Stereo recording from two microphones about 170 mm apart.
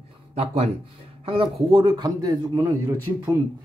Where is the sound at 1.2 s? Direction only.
30° right (ahead or behind).